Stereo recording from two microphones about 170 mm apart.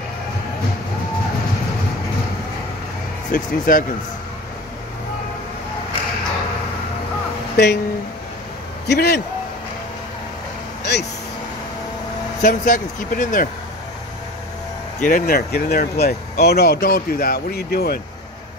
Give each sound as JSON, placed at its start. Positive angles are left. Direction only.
{"t": 3.3, "sound": "speech", "side_deg": 55}
{"t": 7.5, "sound": "speech", "side_deg": 75}
{"t": 8.8, "sound": "a man's voice", "side_deg": 75}
{"t": 10.8, "sound": "vehicle", "side_deg": 80}
{"t": 12.4, "sound": "speech", "side_deg": 55}
{"t": 15.0, "sound": "speech", "side_deg": 55}